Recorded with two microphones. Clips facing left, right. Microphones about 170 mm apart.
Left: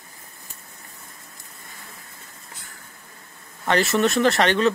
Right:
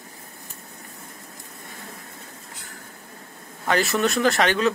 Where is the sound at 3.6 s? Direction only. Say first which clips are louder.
Left 2 dB; centre (ahead or behind).